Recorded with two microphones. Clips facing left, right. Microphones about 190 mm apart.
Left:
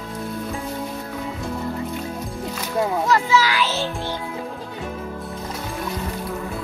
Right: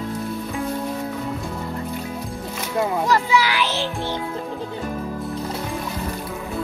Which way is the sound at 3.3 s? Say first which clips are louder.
Even; 15° right (ahead or behind).